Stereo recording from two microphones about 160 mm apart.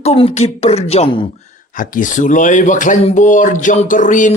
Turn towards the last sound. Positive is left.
turn(degrees=50)  # may be behind; listen again after turning